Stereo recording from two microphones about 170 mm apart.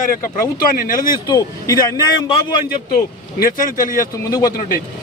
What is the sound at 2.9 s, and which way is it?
Speech, 60° left (ahead or behind).